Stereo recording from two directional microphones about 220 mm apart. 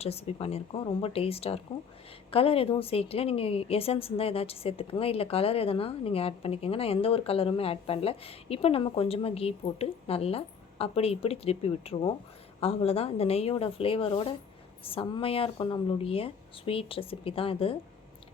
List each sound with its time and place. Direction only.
0.0 s a woman's voice: 25° left (ahead or behind)